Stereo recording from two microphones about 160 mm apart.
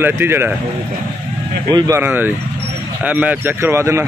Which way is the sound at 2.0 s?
10° right (ahead or behind).